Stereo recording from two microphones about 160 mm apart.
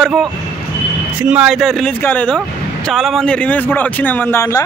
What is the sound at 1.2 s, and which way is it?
A man's voice, 5° right (ahead or behind).